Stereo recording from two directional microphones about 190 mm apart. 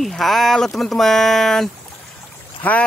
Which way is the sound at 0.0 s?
Centre (ahead or behind).